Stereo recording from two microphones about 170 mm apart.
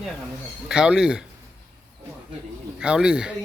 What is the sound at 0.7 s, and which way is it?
Speech, 5° right (ahead or behind).